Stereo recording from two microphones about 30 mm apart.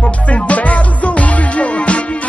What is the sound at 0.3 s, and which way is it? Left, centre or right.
Music, left.